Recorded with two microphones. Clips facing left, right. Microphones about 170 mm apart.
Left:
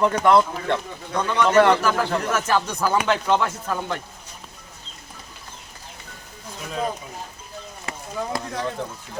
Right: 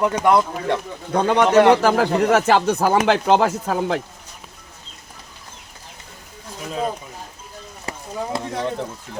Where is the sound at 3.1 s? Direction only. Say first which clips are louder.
Right 5 dB; 90° right.